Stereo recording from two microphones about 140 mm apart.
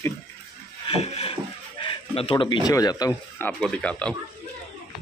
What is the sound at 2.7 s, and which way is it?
Speech, 25° left (ahead or behind).